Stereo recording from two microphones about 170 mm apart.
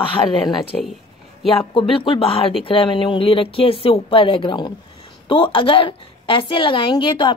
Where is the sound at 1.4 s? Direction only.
30° left (ahead or behind).